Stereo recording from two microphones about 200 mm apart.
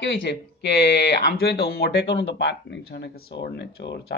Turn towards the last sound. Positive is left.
turn(degrees=60)  # may be behind; listen again after turning